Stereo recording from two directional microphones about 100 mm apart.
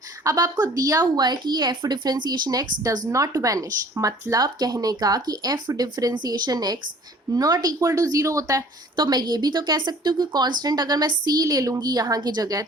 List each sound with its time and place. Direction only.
0.3 s a woman's voice: 40° right (ahead or behind)
9.0 s a woman's voice: 45° right (ahead or behind)